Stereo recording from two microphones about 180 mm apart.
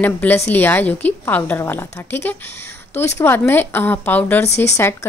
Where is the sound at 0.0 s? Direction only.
10° left (ahead or behind).